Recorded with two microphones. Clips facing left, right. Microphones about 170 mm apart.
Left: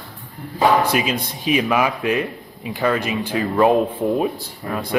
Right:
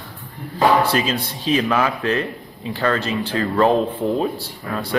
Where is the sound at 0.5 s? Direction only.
15° left (ahead or behind).